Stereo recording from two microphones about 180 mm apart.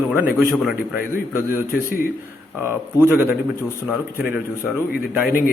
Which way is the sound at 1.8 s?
50° left (ahead or behind).